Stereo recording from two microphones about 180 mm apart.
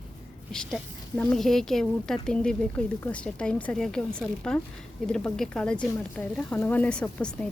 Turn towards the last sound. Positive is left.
turn(degrees=5)  # may be behind; listen again after turning